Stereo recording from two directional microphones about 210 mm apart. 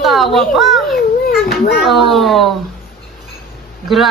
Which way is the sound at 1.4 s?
45° left (ahead or behind).